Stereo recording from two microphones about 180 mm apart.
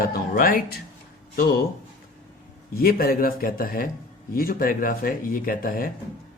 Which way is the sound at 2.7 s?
55° left (ahead or behind).